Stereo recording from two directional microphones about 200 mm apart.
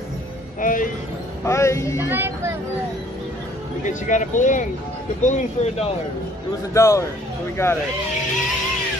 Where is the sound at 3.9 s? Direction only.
40° left (ahead or behind).